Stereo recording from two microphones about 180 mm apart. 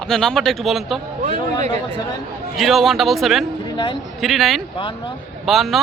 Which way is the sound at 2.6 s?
Centre (ahead or behind).